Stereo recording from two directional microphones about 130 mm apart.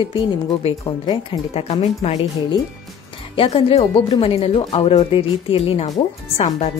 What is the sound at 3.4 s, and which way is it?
Speech, 45° left (ahead or behind).